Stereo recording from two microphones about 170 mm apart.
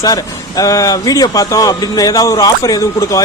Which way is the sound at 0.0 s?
20° left (ahead or behind).